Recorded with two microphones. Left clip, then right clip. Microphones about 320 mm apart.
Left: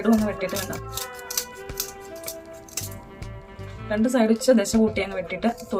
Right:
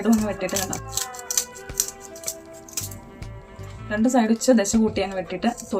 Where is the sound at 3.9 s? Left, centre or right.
Centre.